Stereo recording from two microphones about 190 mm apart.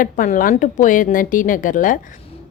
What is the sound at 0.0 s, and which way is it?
Speech, 45° left (ahead or behind).